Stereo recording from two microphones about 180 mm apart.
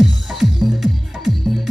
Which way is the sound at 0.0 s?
Centre (ahead or behind).